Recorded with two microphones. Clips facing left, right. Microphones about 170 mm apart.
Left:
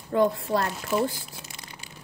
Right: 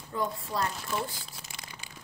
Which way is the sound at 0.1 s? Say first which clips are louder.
Left 10 dB; 70° left (ahead or behind).